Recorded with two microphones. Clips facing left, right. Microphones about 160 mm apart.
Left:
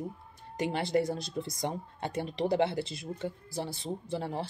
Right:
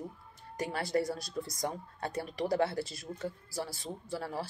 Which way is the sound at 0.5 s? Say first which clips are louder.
Left 3 dB; 25° left (ahead or behind).